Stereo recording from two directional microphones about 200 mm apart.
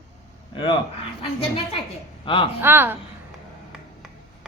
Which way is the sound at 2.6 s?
10° right (ahead or behind).